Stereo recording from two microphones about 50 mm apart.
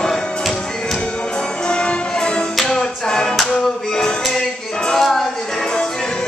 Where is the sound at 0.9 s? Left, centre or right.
Centre.